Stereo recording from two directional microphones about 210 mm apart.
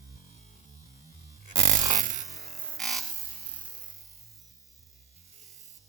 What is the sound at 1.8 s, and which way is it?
Music, 35° right (ahead or behind).